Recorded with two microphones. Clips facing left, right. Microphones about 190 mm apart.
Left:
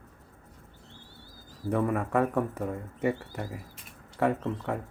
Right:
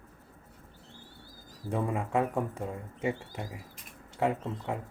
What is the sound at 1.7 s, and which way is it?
Speech, 20° right (ahead or behind).